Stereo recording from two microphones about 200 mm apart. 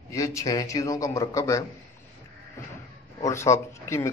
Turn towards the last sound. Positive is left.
turn(degrees=15)  # may be behind; listen again after turning